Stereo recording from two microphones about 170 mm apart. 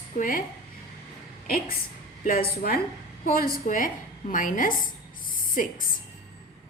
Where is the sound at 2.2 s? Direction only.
60° left (ahead or behind).